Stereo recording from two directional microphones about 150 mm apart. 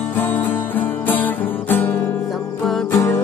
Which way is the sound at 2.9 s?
20° left (ahead or behind).